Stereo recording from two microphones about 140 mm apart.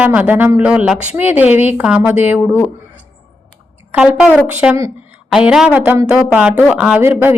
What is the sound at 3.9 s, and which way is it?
A woman's voice, 10° right (ahead or behind).